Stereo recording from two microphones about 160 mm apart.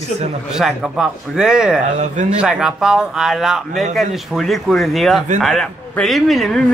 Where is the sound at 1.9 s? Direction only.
50° right (ahead or behind).